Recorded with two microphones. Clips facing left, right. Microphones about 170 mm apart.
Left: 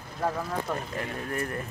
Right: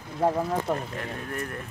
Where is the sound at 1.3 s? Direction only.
Centre (ahead or behind).